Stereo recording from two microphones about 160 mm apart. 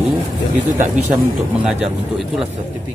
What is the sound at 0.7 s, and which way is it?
Speech, 50° right (ahead or behind).